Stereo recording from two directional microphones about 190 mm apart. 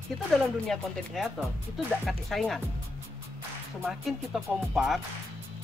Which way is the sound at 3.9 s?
Centre (ahead or behind).